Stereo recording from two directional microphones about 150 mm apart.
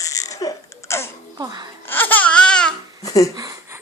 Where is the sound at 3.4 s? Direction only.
25° right (ahead or behind).